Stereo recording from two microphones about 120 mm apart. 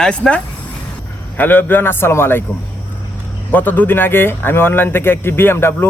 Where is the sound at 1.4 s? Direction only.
15° left (ahead or behind).